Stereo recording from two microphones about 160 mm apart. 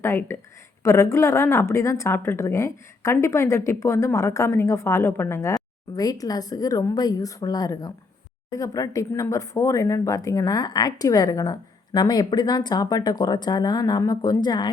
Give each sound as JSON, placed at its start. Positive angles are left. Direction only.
{"t": 0.0, "sound": "a woman's voice", "side_deg": 15}